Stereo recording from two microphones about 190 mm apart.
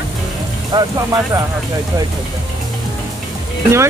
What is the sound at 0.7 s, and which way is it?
Speech, 20° right (ahead or behind).